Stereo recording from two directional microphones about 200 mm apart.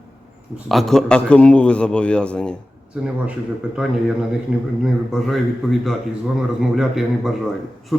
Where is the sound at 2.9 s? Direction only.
5° right (ahead or behind).